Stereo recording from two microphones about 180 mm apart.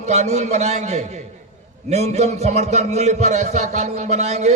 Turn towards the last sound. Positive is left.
turn(degrees=-40)  # may be behind; listen again after turning